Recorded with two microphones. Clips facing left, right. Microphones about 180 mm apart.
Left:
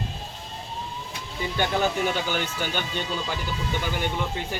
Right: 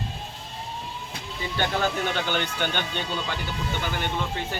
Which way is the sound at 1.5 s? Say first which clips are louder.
Left 1 dB; 10° left (ahead or behind).